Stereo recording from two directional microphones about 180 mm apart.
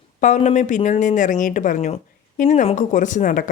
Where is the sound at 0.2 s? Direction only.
40° left (ahead or behind).